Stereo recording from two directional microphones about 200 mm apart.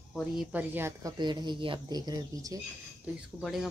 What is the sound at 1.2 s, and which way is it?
Speech, 20° right (ahead or behind).